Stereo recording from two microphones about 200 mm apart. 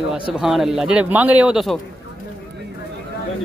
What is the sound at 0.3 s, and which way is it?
A man's voice, centre (ahead or behind).